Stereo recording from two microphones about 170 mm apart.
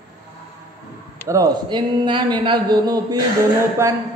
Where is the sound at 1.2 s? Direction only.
20° right (ahead or behind).